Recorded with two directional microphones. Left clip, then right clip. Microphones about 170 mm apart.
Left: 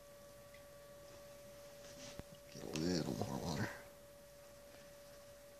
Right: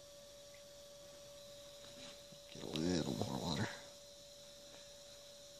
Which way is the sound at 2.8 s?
35° right (ahead or behind).